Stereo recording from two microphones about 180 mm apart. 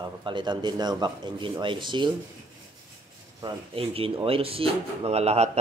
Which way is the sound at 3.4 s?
30° right (ahead or behind).